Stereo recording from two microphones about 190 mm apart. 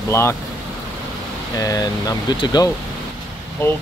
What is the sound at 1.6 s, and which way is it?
Speech, 20° left (ahead or behind).